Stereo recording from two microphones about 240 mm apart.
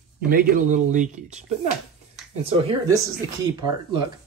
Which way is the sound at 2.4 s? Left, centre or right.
Right.